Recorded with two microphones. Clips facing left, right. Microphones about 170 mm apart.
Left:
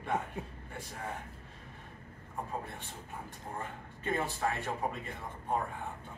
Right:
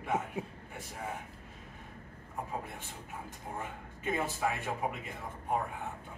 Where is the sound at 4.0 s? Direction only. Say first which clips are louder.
Even; 10° right (ahead or behind).